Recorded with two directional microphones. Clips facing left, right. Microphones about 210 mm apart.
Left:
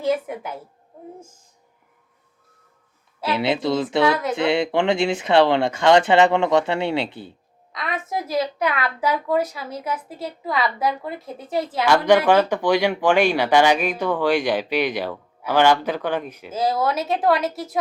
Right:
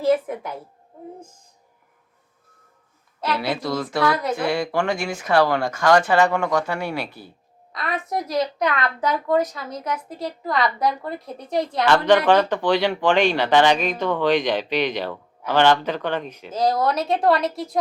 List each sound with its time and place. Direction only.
0.0 s a woman's voice: centre (ahead or behind)
3.2 s speech: 25° left (ahead or behind)
4.1 s a woman's voice: centre (ahead or behind)
4.4 s speech: 25° left (ahead or behind)
7.7 s a woman's voice: centre (ahead or behind)